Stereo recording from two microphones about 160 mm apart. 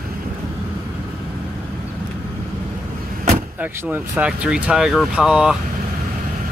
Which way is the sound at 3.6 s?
10° right (ahead or behind).